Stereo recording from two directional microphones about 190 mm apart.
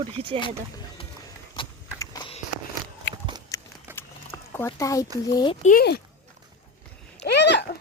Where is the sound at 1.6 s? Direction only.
25° left (ahead or behind).